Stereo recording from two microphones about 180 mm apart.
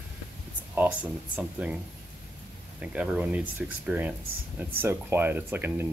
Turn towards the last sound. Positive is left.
turn(degrees=-10)  # may be behind; listen again after turning